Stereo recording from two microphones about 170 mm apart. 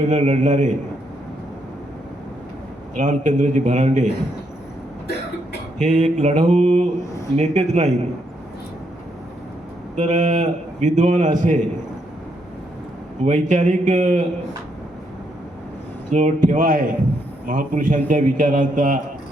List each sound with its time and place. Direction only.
0.1 s a man's voice: 45° right (ahead or behind)
3.0 s a man's voice: 45° right (ahead or behind)
5.8 s a man's voice: 45° right (ahead or behind)
9.9 s a man's voice: 45° right (ahead or behind)
13.2 s a man's voice: 45° right (ahead or behind)
16.0 s a man's voice: 45° right (ahead or behind)